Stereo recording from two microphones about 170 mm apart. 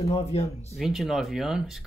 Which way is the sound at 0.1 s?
35° left (ahead or behind).